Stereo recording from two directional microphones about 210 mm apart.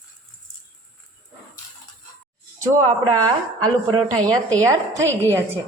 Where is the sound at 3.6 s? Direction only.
20° right (ahead or behind).